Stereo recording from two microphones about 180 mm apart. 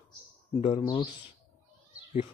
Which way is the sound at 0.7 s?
20° left (ahead or behind).